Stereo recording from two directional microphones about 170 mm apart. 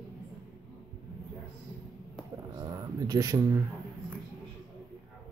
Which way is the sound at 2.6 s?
20° right (ahead or behind).